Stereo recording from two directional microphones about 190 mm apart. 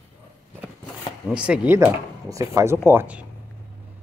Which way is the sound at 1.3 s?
5° right (ahead or behind).